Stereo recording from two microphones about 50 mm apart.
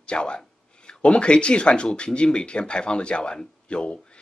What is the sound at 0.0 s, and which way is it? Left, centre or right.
Speech, left.